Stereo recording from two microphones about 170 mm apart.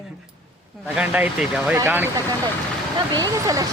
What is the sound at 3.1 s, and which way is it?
Speech, 20° right (ahead or behind).